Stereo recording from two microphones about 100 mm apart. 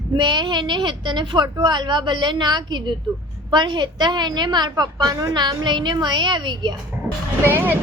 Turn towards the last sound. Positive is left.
turn(degrees=-20)  # may be behind; listen again after turning